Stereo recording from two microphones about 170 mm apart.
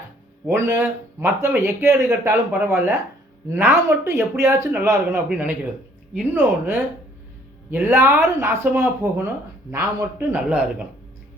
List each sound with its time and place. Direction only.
0.4 s speech: 15° right (ahead or behind)